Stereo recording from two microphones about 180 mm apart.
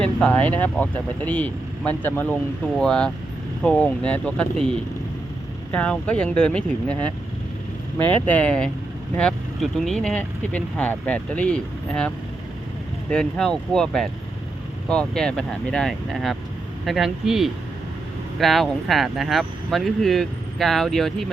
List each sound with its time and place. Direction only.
0.0 s speech: 5° left (ahead or behind)
5.7 s speech: 5° left (ahead or behind)